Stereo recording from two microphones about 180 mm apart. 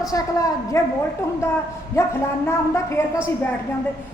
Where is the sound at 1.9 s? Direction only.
15° left (ahead or behind).